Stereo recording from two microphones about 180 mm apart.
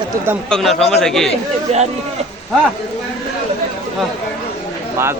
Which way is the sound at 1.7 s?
40° right (ahead or behind).